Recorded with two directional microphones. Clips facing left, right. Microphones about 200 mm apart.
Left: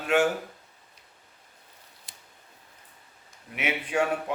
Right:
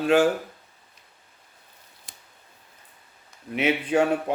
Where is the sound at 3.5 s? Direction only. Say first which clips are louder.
Right 6 dB; 30° right (ahead or behind).